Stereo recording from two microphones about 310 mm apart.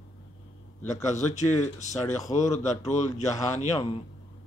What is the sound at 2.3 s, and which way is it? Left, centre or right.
Speech, left.